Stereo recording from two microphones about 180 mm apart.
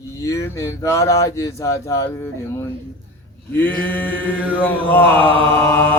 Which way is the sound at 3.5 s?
10° left (ahead or behind).